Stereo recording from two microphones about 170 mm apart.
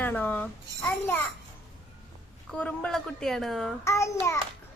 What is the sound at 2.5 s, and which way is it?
A woman's voice, 5° left (ahead or behind).